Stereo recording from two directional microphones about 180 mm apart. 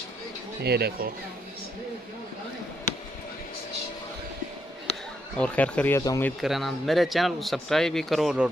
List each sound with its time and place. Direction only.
0.7 s speech: 60° right (ahead or behind)
5.4 s speech: 10° left (ahead or behind)
6.4 s speech: centre (ahead or behind)